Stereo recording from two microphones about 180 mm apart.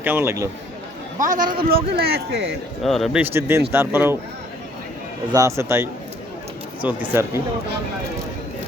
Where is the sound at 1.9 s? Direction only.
60° right (ahead or behind).